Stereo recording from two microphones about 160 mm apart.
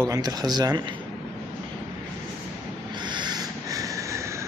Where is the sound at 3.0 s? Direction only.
30° right (ahead or behind).